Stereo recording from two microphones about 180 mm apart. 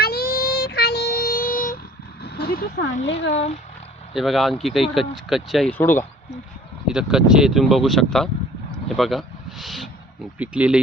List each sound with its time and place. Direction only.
0.0 s child singing: 60° left (ahead or behind)
2.2 s speech: 60° left (ahead or behind)
3.3 s speech: 35° left (ahead or behind)
4.1 s speech: centre (ahead or behind)
6.8 s speech: 5° right (ahead or behind)